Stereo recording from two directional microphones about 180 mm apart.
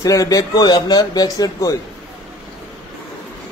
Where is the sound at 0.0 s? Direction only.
20° left (ahead or behind).